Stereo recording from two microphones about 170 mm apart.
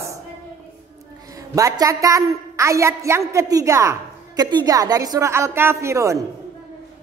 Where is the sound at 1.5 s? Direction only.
20° right (ahead or behind).